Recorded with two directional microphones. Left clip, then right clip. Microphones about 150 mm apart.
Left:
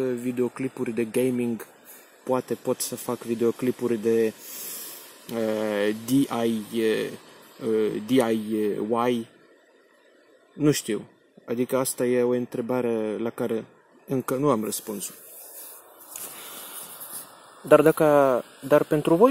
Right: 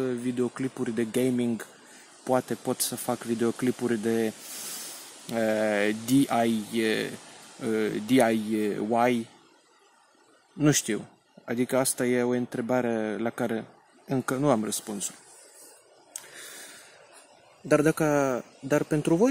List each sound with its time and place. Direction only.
0.0 s speech: 5° right (ahead or behind)
2.2 s speech: 20° right (ahead or behind)
10.6 s speech: 15° right (ahead or behind)
17.7 s speech: 30° right (ahead or behind)